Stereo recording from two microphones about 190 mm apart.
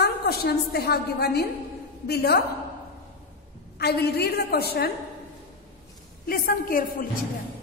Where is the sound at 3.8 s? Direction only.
60° left (ahead or behind).